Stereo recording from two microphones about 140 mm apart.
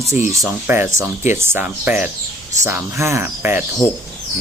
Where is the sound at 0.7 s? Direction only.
15° right (ahead or behind).